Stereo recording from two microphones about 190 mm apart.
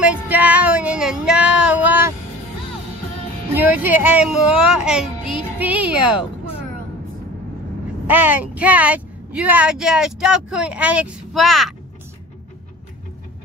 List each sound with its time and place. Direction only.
0.0 s a sound: 5° right (ahead or behind)
3.5 s a child's voice: 10° right (ahead or behind)
8.1 s speech: 10° right (ahead or behind)